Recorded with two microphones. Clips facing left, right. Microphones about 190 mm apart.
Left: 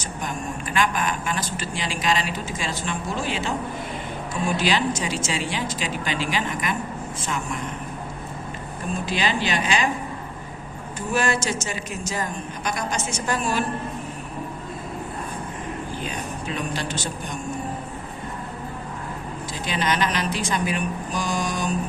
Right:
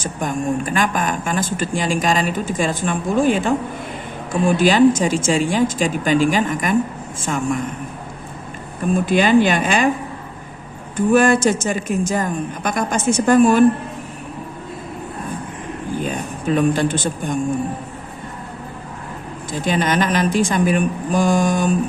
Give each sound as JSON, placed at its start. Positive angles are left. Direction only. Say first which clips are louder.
{"t": 0.0, "sound": "speech", "louder": "right 8 dB", "side_deg": -50}
{"t": 9.0, "sound": "speech", "louder": "right 11 dB", "side_deg": -50}
{"t": 10.9, "sound": "speech", "louder": "right 10 dB", "side_deg": -55}
{"t": 16.0, "sound": "a man's voice", "louder": "right 6 dB", "side_deg": -50}
{"t": 19.5, "sound": "speech", "louder": "right 6 dB", "side_deg": -50}